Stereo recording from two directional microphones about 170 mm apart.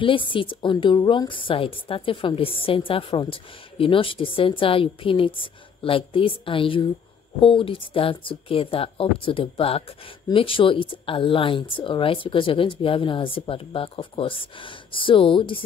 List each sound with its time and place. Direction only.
0.0 s a woman's voice: 30° left (ahead or behind)